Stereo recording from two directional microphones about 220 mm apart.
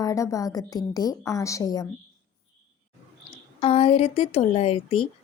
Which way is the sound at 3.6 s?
25° left (ahead or behind).